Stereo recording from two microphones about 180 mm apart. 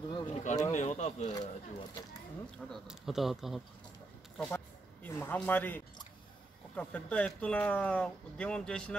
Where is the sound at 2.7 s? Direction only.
Centre (ahead or behind).